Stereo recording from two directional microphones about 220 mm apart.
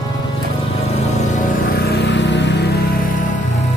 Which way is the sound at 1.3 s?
45° left (ahead or behind).